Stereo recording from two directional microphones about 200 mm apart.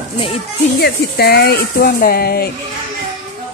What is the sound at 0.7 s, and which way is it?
Speech, 55° left (ahead or behind).